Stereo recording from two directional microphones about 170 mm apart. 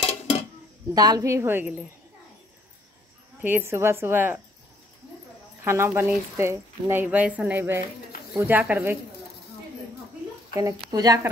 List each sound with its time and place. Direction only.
0.9 s speech: 20° right (ahead or behind)
3.4 s speech: 15° right (ahead or behind)
5.6 s speech: 15° right (ahead or behind)
5.9 s speech: 5° right (ahead or behind)
6.3 s speech: 15° right (ahead or behind)
10.5 s speech: 25° right (ahead or behind)